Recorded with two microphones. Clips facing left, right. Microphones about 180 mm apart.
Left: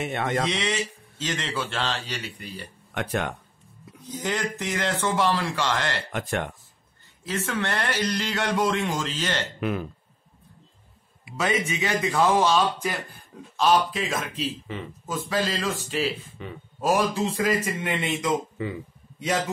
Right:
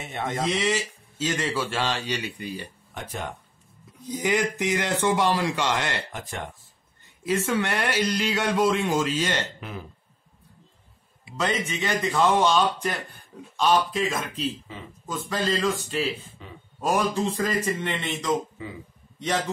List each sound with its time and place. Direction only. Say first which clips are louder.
0.0 s speech: left 3 dB; 70° left (ahead or behind)
0.5 s a man's voice: right 2 dB; 5° right (ahead or behind)
2.9 s speech: left 7 dB; 70° left (ahead or behind)
4.1 s a man's voice: right 4 dB; 15° right (ahead or behind)
6.1 s speech: left 6 dB; 70° left (ahead or behind)
7.5 s a man's voice: right 2 dB; 10° right (ahead or behind)
9.6 s speech: left 10 dB; 65° left (ahead or behind)
11.3 s a man's voice: left 1 dB; 10° left (ahead or behind)
16.4 s speech: left 7 dB; 65° left (ahead or behind)
16.8 s speech: left 1 dB; 5° left (ahead or behind)
18.6 s speech: left 7 dB; 70° left (ahead or behind)
19.1 s a man's voice: left 1 dB; 10° left (ahead or behind)